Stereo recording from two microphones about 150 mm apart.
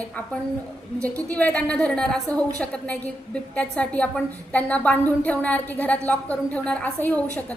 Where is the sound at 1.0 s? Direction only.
10° left (ahead or behind).